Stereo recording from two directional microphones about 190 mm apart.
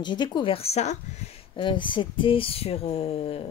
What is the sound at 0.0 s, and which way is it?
Speech, 25° left (ahead or behind).